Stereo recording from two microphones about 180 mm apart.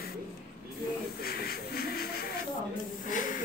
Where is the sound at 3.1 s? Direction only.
50° left (ahead or behind).